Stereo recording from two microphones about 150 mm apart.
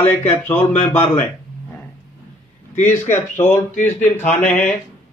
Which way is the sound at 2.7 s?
55° left (ahead or behind).